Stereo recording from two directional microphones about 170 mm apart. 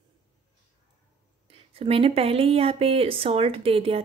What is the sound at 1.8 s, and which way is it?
Speech, 35° right (ahead or behind).